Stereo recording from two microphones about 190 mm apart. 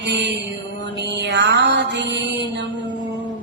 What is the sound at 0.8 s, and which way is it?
Mantra, 65° right (ahead or behind).